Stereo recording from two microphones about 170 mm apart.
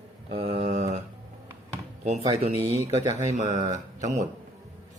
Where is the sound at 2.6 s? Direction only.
15° right (ahead or behind).